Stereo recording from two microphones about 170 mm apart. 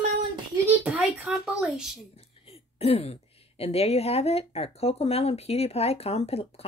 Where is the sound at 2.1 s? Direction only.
35° left (ahead or behind).